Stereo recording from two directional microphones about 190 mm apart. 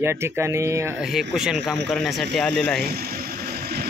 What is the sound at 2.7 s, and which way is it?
Vehicle, 55° right (ahead or behind).